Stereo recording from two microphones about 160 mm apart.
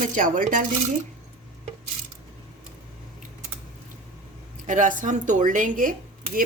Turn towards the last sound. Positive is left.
turn(degrees=-60)  # may be behind; listen again after turning